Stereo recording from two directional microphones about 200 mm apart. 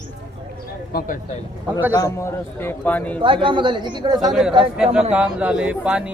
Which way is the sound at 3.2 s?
25° right (ahead or behind).